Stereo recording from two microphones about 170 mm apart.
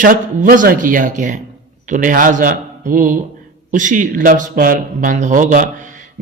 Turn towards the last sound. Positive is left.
turn(degrees=-50)  # may be behind; listen again after turning